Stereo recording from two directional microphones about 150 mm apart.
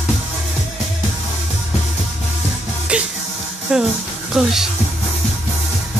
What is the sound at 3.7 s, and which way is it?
Speech, 5° right (ahead or behind).